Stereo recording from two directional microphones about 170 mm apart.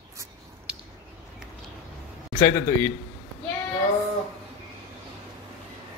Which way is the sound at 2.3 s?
20° left (ahead or behind).